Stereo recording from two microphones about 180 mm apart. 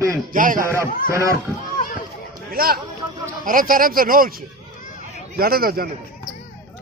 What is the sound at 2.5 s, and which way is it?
A man's voice, 55° right (ahead or behind).